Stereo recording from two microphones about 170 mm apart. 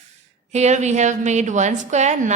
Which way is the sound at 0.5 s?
40° right (ahead or behind).